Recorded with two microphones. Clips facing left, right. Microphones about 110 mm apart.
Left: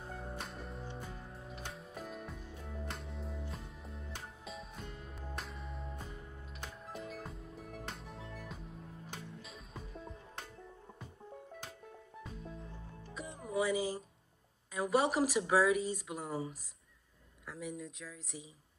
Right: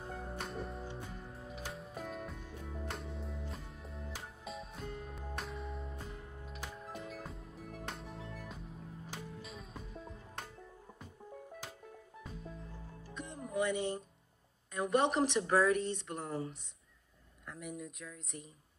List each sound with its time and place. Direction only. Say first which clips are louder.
0.4 s music: right 3 dB; centre (ahead or behind)
12.2 s music: left 1 dB; centre (ahead or behind)
14.7 s speech: even; 5° left (ahead or behind)